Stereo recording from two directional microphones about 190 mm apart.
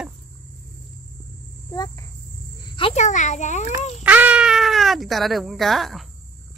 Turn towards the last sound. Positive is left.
turn(degrees=0)  # may be behind; listen again after turning